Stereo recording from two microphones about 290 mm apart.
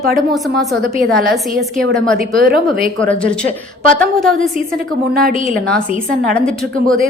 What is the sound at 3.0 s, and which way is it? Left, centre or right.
A woman's voice, centre.